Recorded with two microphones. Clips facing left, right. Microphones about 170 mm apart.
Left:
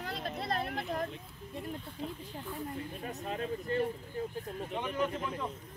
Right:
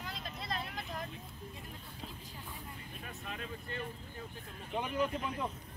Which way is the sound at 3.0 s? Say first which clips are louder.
Left 6 dB; 35° left (ahead or behind).